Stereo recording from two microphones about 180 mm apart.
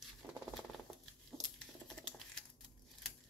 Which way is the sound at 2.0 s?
5° left (ahead or behind).